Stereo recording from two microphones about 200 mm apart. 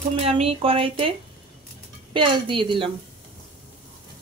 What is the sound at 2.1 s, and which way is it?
Speech, 25° right (ahead or behind).